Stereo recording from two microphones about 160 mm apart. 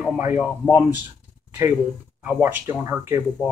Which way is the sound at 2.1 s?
10° right (ahead or behind).